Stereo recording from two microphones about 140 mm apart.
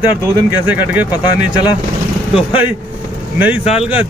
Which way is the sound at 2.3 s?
10° right (ahead or behind).